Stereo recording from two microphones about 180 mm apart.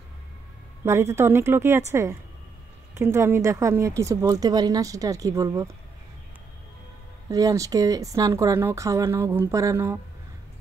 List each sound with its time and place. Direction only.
0.8 s speech: 15° right (ahead or behind)
7.2 s speech: 20° right (ahead or behind)